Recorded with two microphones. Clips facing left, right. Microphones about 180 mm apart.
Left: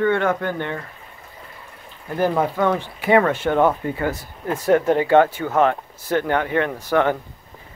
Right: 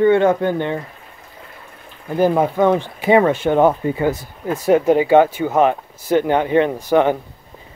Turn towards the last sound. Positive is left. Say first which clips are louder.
# right 4 dB
turn(degrees=-15)  # may be behind; listen again after turning